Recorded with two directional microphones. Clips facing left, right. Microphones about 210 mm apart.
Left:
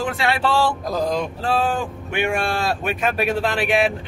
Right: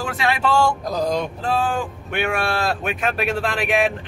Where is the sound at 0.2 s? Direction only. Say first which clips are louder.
Right 2 dB; 35° left (ahead or behind).